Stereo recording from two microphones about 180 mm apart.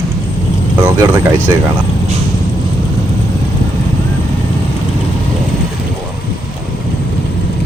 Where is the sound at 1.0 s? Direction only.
20° right (ahead or behind).